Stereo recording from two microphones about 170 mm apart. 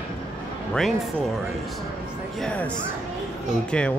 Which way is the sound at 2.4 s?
5° left (ahead or behind).